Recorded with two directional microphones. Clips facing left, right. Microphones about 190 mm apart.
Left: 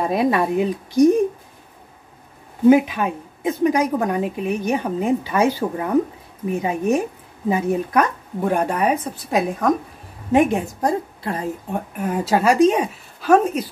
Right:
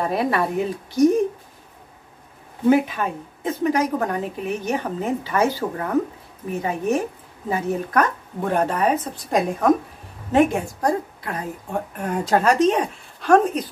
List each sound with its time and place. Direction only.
0.0 s a woman's voice: 15° left (ahead or behind)
2.7 s a woman's voice: 15° left (ahead or behind)
10.3 s a woman's voice: 20° left (ahead or behind)
11.9 s a woman's voice: 5° left (ahead or behind)